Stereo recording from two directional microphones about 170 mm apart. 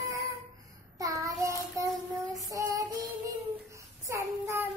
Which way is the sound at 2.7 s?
20° right (ahead or behind).